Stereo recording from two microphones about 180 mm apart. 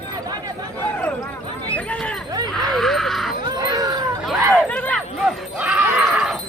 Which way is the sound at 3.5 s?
20° right (ahead or behind).